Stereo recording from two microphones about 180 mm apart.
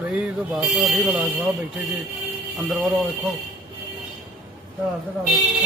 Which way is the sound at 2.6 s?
Centre (ahead or behind).